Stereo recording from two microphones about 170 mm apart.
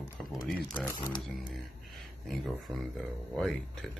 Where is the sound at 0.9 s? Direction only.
25° left (ahead or behind).